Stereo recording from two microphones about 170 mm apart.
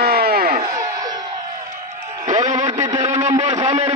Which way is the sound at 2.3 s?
45° right (ahead or behind).